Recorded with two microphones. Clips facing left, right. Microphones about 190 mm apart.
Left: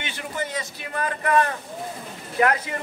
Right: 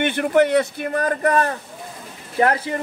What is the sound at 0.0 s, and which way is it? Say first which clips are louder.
Speech: right 14 dB; 60° right (ahead or behind).